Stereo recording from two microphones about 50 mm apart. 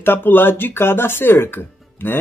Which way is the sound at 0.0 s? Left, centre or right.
Left.